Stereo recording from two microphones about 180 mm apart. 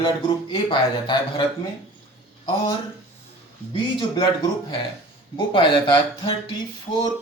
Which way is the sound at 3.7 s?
25° left (ahead or behind).